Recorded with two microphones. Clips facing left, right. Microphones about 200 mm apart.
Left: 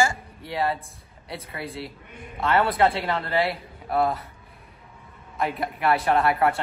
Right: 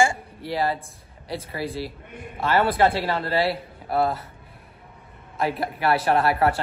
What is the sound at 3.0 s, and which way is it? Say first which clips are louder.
Speech: right 2 dB; 30° right (ahead or behind).